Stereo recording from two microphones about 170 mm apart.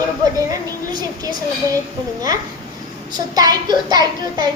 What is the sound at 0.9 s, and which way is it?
Speech, 25° right (ahead or behind).